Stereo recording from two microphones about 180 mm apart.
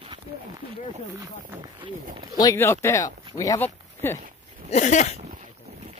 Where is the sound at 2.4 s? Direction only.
15° left (ahead or behind).